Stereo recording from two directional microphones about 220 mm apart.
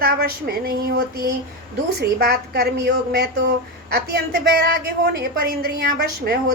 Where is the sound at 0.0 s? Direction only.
45° right (ahead or behind).